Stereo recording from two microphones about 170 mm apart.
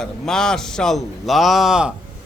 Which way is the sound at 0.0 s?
5° left (ahead or behind).